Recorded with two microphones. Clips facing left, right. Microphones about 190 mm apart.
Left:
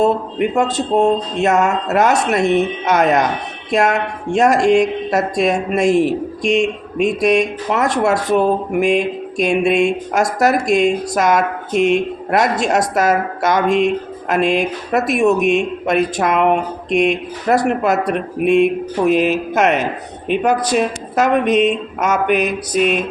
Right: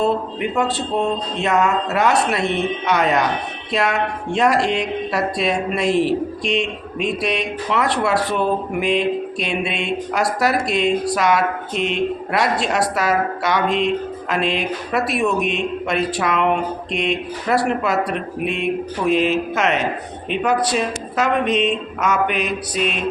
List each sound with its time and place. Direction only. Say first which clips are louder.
0.0 s a woman's voice: left 4 dB; 45° left (ahead or behind)
19.0 s speech: left 3 dB; 5° left (ahead or behind)
19.5 s a woman's voice: left 4 dB; 50° left (ahead or behind)